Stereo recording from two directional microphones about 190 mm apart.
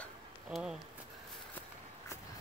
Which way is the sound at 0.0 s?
Centre (ahead or behind).